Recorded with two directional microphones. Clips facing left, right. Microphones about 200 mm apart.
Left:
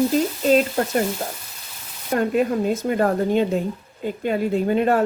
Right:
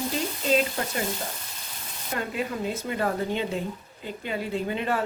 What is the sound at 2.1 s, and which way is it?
Frying, 50° left (ahead or behind).